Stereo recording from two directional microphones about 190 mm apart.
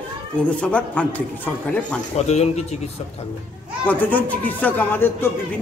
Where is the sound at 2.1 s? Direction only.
35° left (ahead or behind).